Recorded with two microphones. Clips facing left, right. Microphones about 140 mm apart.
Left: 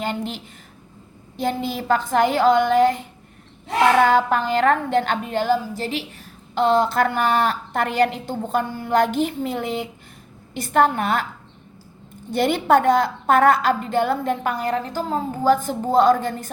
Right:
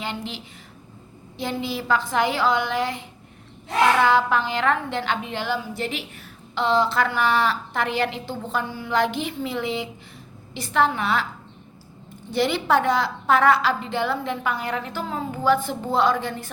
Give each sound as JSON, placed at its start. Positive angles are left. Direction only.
{"t": 0.0, "sound": "a woman's voice", "side_deg": 45}
{"t": 12.3, "sound": "a woman's voice", "side_deg": 50}